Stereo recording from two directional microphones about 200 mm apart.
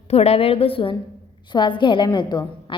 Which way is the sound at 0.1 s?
30° left (ahead or behind).